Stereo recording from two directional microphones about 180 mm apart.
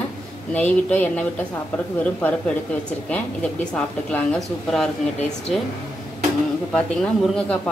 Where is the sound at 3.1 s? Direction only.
5° left (ahead or behind).